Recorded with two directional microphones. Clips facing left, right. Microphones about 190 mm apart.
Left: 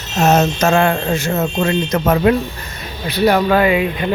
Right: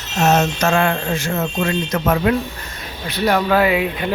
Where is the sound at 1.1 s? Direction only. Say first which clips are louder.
Left 3 dB; 25° left (ahead or behind).